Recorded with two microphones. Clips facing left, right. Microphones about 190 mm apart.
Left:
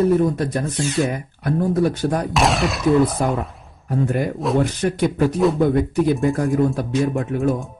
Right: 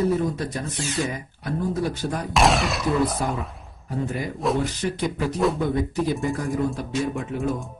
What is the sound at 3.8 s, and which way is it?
Speech, 55° left (ahead or behind).